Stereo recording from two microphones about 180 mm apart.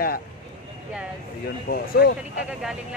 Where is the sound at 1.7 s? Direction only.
60° left (ahead or behind).